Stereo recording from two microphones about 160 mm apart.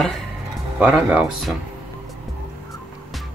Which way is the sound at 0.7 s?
10° right (ahead or behind).